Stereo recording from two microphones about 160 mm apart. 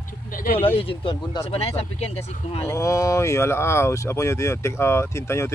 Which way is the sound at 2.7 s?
20° left (ahead or behind).